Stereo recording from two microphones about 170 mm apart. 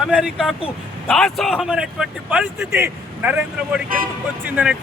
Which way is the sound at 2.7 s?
15° right (ahead or behind).